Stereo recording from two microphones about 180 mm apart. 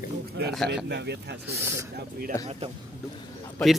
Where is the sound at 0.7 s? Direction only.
70° right (ahead or behind).